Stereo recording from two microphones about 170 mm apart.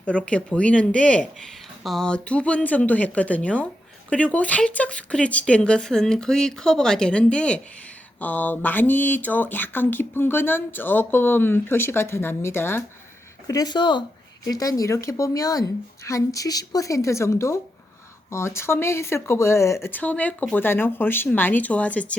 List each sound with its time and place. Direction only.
0.0 s speech: 5° left (ahead or behind)